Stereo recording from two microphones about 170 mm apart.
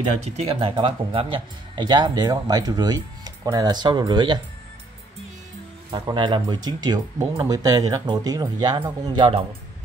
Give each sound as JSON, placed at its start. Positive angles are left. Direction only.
{"t": 0.2, "sound": "speech", "side_deg": -40}
{"t": 5.9, "sound": "speech", "side_deg": -25}